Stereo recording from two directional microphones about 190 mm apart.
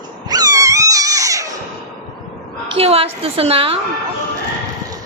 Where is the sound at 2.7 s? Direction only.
30° right (ahead or behind).